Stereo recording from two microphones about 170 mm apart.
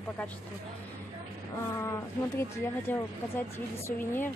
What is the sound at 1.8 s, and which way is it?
Speech, 15° left (ahead or behind).